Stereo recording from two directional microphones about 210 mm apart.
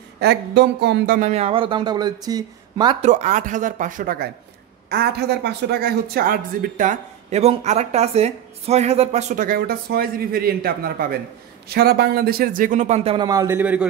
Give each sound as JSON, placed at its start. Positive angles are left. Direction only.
{"t": 0.2, "sound": "speech", "side_deg": -50}
{"t": 3.1, "sound": "speech", "side_deg": -35}